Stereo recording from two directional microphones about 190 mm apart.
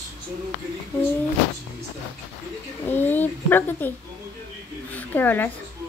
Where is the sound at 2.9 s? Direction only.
10° left (ahead or behind).